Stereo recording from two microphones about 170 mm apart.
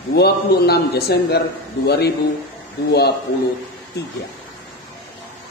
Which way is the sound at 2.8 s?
70° left (ahead or behind).